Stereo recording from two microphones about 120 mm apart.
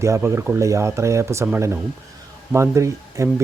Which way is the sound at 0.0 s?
25° right (ahead or behind).